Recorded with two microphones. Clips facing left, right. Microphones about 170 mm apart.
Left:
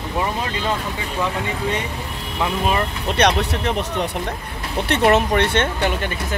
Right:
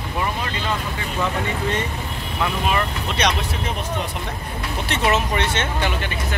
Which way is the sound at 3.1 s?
60° left (ahead or behind).